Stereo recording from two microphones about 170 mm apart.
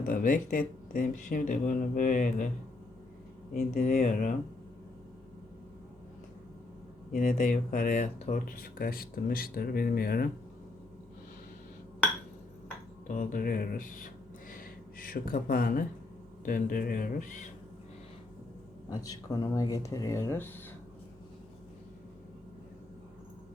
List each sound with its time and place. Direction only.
0.0 s speech: 55° left (ahead or behind)
3.5 s speech: 45° left (ahead or behind)
7.1 s speech: 50° left (ahead or behind)
13.1 s speech: 55° left (ahead or behind)
18.9 s speech: 20° left (ahead or behind)